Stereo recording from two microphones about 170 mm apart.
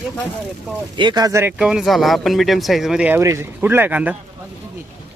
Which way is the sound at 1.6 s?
5° right (ahead or behind).